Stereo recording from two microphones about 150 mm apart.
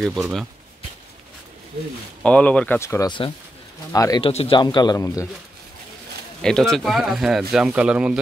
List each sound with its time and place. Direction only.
0.0 s speech: centre (ahead or behind)
2.2 s speech: 10° left (ahead or behind)
4.2 s speech: 40° left (ahead or behind)
4.6 s speech: 30° left (ahead or behind)
6.4 s speech: 5° left (ahead or behind)